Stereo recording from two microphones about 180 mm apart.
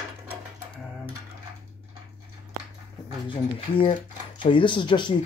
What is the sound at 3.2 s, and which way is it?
Speech, 30° left (ahead or behind).